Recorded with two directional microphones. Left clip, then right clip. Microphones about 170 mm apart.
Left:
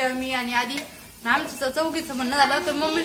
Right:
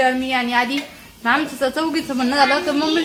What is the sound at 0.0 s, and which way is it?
A woman's voice, 45° right (ahead or behind).